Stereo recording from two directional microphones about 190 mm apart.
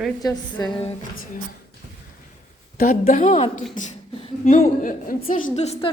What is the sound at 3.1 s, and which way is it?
A woman's voice, 45° left (ahead or behind).